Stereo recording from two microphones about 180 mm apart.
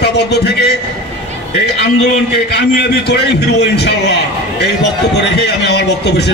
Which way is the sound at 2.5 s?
70° left (ahead or behind).